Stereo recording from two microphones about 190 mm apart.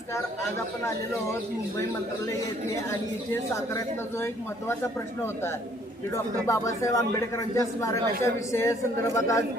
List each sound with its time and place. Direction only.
6.5 s speech: 15° left (ahead or behind)